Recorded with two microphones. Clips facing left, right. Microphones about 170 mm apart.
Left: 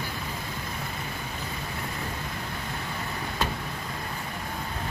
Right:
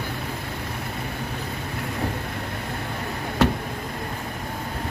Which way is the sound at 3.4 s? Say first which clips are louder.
Right 10 dB; 75° right (ahead or behind).